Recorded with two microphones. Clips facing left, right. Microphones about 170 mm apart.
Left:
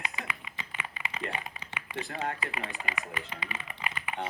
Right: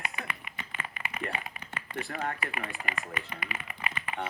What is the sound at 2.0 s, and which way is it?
Speech, 20° left (ahead or behind).